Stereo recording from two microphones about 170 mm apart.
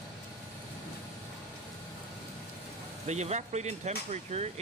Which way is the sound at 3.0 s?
40° right (ahead or behind).